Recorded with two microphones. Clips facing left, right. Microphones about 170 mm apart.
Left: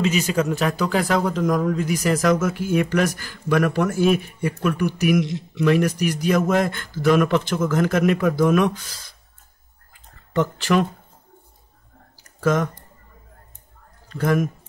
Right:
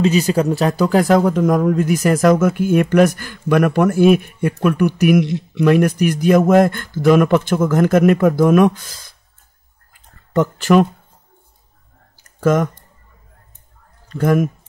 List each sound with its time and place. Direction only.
0.0 s speech: 35° right (ahead or behind)
10.3 s speech: 45° right (ahead or behind)
12.2 s a sound: 50° right (ahead or behind)
14.1 s speech: 50° right (ahead or behind)